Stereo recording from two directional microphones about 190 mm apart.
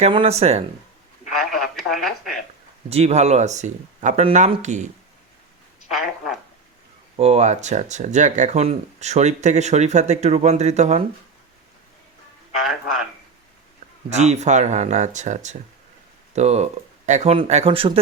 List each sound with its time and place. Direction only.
0.0 s speech: 30° right (ahead or behind)
1.3 s telephone: centre (ahead or behind)
2.9 s speech: 35° right (ahead or behind)
7.2 s speech: 35° right (ahead or behind)
14.2 s speech: 35° right (ahead or behind)